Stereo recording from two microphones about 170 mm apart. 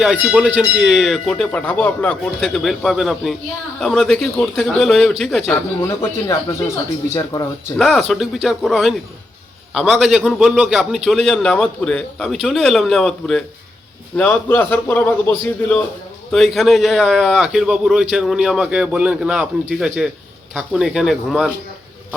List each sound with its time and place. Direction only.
0.0 s a man's voice: 5° right (ahead or behind)
5.8 s a man's voice: 15° left (ahead or behind)
7.8 s a man's voice: centre (ahead or behind)
16.3 s a man's voice: centre (ahead or behind)